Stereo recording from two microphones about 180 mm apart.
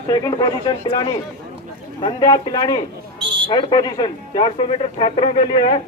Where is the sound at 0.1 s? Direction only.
20° left (ahead or behind).